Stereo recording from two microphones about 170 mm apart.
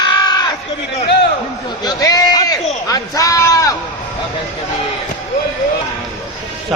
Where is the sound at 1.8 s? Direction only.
20° left (ahead or behind).